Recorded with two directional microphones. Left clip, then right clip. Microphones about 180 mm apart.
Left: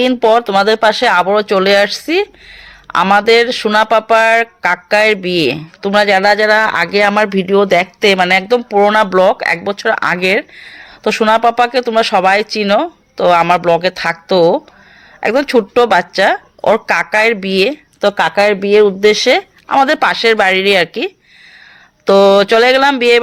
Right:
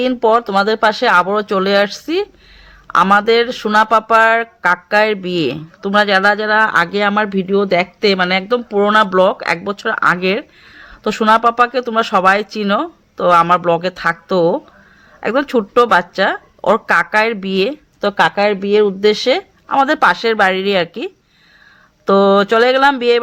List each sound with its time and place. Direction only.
0.0 s speech: 25° left (ahead or behind)